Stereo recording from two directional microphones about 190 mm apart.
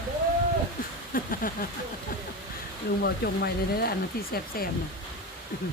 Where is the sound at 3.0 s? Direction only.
55° left (ahead or behind).